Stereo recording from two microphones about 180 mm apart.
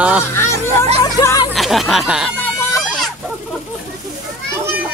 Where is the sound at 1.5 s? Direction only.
Centre (ahead or behind).